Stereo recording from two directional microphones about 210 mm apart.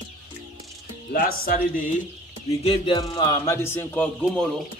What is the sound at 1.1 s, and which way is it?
Speech, 45° left (ahead or behind).